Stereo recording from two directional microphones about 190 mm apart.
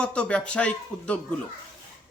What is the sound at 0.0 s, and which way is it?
Speech, 5° left (ahead or behind).